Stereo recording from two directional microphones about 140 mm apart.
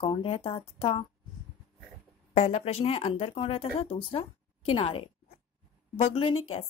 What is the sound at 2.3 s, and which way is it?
A woman's voice, 50° left (ahead or behind).